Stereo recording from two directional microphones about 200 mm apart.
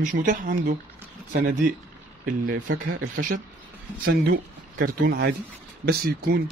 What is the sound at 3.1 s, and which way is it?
Speech, 40° right (ahead or behind).